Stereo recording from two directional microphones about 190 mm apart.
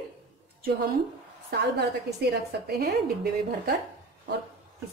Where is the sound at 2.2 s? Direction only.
60° right (ahead or behind).